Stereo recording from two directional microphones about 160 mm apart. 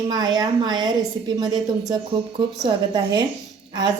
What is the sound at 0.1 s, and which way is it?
A woman's voice, 25° right (ahead or behind).